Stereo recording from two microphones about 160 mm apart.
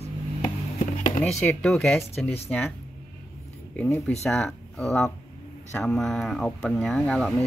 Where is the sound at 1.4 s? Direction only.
10° left (ahead or behind).